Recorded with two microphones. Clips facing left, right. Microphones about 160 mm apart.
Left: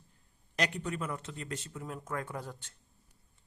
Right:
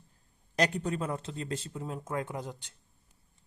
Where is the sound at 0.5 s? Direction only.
35° right (ahead or behind); by 2.7 s 15° right (ahead or behind).